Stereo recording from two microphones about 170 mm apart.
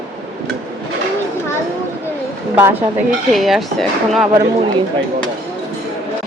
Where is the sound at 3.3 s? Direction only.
Centre (ahead or behind).